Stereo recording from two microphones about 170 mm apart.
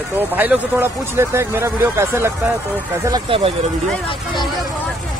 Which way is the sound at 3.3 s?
30° right (ahead or behind).